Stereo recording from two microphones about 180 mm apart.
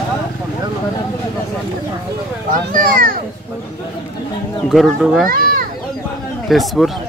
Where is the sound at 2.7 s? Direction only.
50° right (ahead or behind).